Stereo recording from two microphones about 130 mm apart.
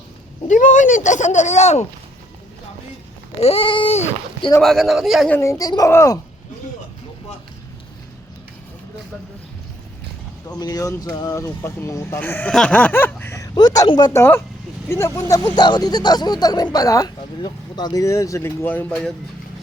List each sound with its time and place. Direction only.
0.4 s speech: 75° left (ahead or behind); by 1.9 s 60° left (ahead or behind)
3.4 s a sound: 45° left (ahead or behind)
4.6 s speech: centre (ahead or behind)
5.3 s speech: 20° left (ahead or behind)
10.5 s speech: 30° left (ahead or behind); by 13.3 s 15° left (ahead or behind)
13.3 s speech: 30° left (ahead or behind)
14.1 s speech: 20° left (ahead or behind)